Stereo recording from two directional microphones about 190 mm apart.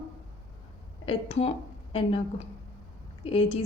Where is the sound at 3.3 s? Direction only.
30° left (ahead or behind).